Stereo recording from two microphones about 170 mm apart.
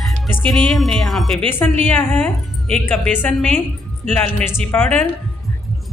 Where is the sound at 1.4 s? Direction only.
10° left (ahead or behind).